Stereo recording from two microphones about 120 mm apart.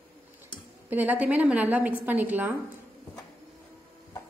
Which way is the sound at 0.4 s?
15° right (ahead or behind).